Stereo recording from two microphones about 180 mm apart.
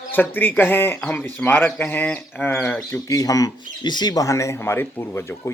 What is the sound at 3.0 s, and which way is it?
Speech, 20° left (ahead or behind).